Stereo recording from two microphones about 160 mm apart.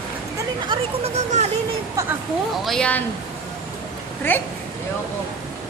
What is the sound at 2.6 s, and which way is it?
Speech, 5° left (ahead or behind).